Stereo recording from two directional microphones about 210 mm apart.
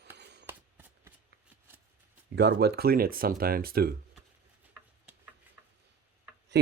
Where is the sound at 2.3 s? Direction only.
50° right (ahead or behind).